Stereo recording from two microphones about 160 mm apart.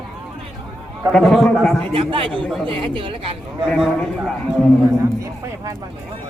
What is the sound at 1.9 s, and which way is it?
Speech, 35° right (ahead or behind).